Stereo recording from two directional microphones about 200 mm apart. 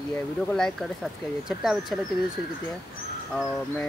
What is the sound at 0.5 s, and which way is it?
Speech, centre (ahead or behind).